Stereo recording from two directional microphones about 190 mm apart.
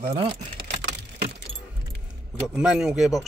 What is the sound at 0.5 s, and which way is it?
Computer keyboard, 60° right (ahead or behind).